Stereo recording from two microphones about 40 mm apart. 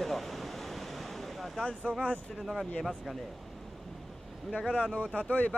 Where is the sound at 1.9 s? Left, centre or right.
Left.